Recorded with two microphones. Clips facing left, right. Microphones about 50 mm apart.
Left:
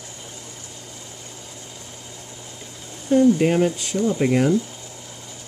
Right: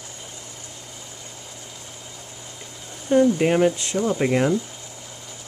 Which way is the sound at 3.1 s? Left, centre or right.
Centre.